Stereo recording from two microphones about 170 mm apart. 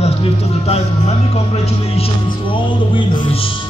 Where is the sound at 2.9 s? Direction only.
30° left (ahead or behind).